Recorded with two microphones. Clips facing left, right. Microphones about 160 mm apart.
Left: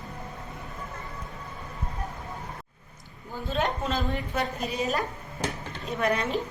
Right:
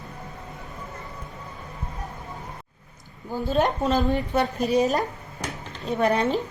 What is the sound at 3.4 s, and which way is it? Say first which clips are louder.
A woman's voice: right 6 dB; 40° right (ahead or behind).